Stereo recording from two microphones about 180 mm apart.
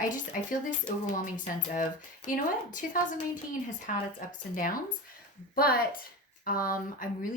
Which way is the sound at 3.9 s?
50° left (ahead or behind).